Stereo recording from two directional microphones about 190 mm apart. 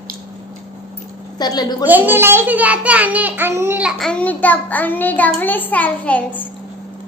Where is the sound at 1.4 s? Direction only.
20° left (ahead or behind).